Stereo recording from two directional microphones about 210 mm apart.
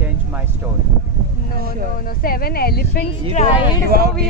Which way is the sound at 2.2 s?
45° left (ahead or behind).